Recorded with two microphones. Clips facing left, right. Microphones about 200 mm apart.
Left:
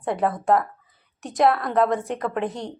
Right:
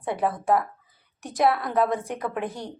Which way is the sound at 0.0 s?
Centre (ahead or behind).